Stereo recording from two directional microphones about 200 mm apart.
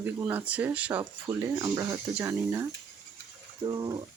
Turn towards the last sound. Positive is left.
turn(degrees=-20)  # may be behind; listen again after turning